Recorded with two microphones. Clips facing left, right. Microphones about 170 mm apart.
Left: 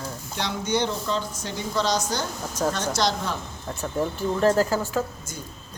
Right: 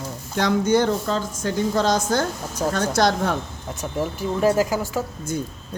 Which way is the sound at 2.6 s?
10° right (ahead or behind).